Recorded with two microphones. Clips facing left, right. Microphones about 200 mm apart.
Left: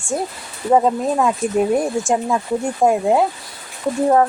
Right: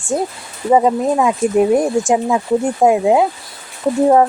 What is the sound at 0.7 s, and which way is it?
Speech, 10° right (ahead or behind).